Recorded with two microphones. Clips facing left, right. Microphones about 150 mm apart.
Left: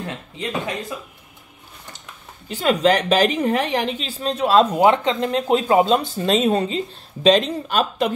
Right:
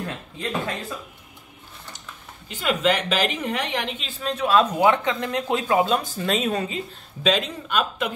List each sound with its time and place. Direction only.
0.0 s speech: 20° left (ahead or behind)
2.5 s a woman's voice: 35° left (ahead or behind)